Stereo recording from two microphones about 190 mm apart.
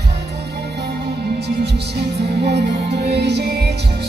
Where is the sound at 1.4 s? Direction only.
60° right (ahead or behind).